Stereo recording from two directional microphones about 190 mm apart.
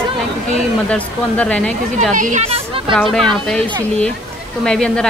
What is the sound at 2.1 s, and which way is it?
Speech, 40° right (ahead or behind).